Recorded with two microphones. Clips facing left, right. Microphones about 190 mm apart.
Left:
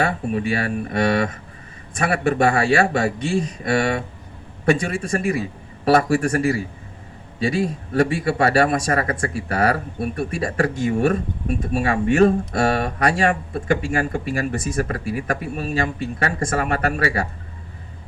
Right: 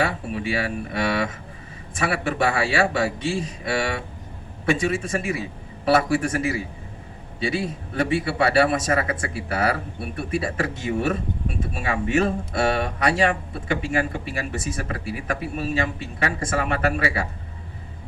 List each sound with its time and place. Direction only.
0.0 s speech: 45° left (ahead or behind)